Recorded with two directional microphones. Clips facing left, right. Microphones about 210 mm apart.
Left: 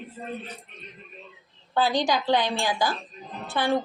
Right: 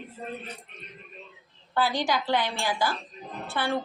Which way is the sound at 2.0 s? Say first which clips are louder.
Left 3 dB; 20° left (ahead or behind).